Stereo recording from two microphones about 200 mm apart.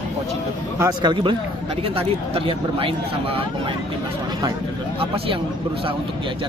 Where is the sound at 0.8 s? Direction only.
20° right (ahead or behind).